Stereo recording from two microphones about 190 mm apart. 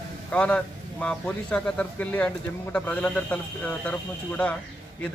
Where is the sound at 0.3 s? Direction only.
5° left (ahead or behind).